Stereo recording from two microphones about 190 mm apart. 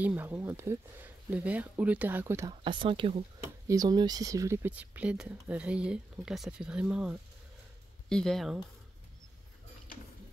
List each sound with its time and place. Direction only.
0.0 s speech: 10° right (ahead or behind)
2.6 s speech: 25° right (ahead or behind)
3.4 s speech: 15° right (ahead or behind); by 8.5 s centre (ahead or behind)